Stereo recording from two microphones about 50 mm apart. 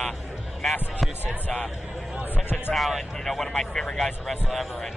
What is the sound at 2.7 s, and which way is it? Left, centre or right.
Speech, centre.